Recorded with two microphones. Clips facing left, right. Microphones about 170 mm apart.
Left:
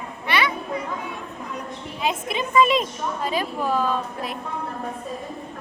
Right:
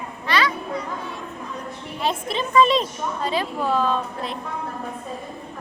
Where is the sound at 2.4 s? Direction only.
10° left (ahead or behind).